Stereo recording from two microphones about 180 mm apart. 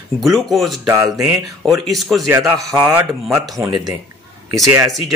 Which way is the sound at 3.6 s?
20° right (ahead or behind).